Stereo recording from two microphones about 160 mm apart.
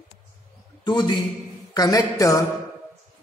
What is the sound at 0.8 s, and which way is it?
Speech, 30° left (ahead or behind).